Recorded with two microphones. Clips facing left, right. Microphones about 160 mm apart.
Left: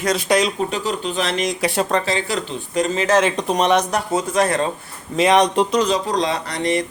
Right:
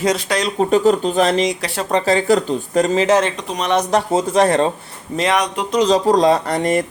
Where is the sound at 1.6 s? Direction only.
15° left (ahead or behind).